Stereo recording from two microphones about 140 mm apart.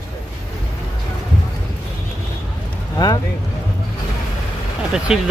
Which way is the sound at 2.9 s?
25° left (ahead or behind).